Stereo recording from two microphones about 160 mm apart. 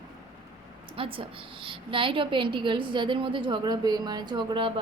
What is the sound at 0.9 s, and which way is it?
A woman's voice, 35° right (ahead or behind).